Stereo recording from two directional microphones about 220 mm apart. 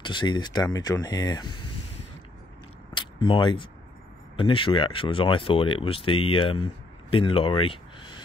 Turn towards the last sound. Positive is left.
turn(degrees=25)  # may be behind; listen again after turning